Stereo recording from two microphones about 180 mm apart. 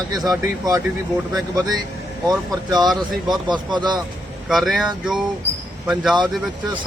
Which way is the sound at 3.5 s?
25° right (ahead or behind).